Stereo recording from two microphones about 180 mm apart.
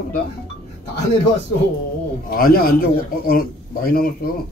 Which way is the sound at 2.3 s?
55° left (ahead or behind).